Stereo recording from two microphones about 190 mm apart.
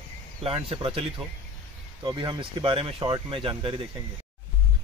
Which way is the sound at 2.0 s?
20° right (ahead or behind).